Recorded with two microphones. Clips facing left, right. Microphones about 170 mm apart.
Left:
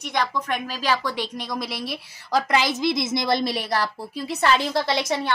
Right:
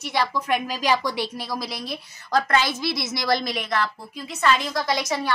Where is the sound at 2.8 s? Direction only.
25° left (ahead or behind).